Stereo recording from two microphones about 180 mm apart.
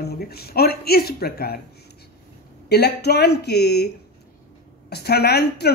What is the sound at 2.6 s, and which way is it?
Speech, 65° left (ahead or behind).